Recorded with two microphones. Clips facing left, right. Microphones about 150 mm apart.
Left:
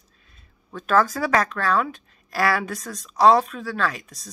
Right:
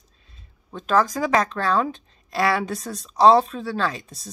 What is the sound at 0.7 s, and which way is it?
Speech, 15° right (ahead or behind).